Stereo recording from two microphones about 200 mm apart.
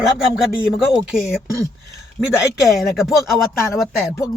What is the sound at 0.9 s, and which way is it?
Speech, 5° right (ahead or behind).